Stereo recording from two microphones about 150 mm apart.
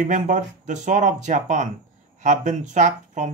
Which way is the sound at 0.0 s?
55° right (ahead or behind).